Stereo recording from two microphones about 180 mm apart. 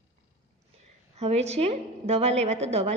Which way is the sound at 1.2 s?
35° right (ahead or behind).